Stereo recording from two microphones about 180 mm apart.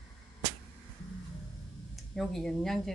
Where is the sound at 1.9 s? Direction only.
Centre (ahead or behind).